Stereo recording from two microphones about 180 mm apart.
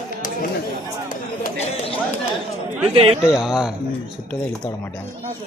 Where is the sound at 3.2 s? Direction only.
5° right (ahead or behind).